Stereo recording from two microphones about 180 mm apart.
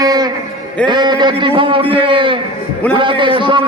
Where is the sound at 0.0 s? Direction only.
20° right (ahead or behind).